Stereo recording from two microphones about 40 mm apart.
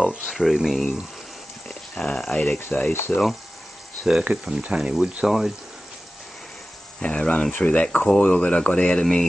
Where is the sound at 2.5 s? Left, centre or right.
Centre.